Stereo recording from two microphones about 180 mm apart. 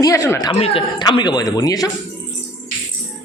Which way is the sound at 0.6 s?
30° left (ahead or behind).